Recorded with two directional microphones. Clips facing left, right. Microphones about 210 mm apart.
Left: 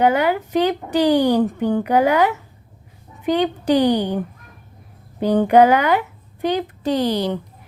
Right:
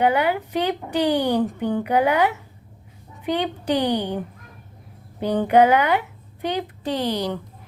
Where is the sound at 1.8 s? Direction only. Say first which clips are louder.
Left 3 dB; 45° left (ahead or behind).